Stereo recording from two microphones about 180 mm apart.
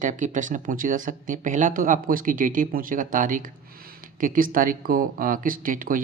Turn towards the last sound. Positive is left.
turn(degrees=-50)  # may be behind; listen again after turning